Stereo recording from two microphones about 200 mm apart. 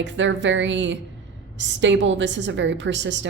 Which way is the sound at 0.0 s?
65° right (ahead or behind).